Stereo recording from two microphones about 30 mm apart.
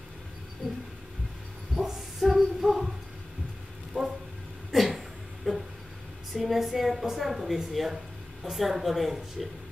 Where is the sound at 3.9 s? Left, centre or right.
Right.